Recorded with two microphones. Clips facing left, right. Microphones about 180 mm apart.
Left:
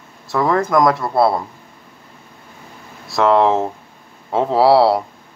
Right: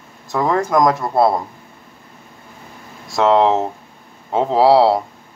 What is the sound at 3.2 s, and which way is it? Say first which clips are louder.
Speech: even; 25° right (ahead or behind).